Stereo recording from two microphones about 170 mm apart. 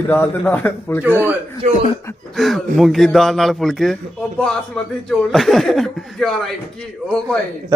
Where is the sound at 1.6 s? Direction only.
40° right (ahead or behind).